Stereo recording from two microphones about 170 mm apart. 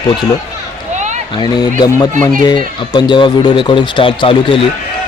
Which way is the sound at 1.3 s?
25° left (ahead or behind).